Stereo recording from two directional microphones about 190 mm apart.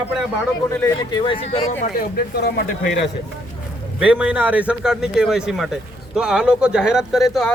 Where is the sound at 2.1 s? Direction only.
55° left (ahead or behind).